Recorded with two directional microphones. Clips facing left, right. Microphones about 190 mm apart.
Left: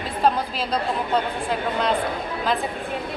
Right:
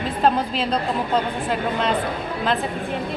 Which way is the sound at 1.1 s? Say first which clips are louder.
Right 1 dB; centre (ahead or behind).